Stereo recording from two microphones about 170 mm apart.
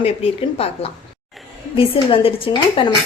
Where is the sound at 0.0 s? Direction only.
35° left (ahead or behind).